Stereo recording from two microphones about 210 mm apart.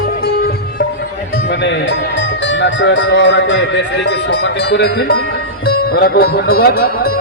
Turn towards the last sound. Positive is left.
turn(degrees=45)  # may be behind; listen again after turning